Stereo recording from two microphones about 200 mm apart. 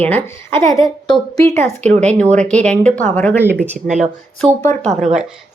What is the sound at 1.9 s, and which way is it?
Speech, 35° right (ahead or behind).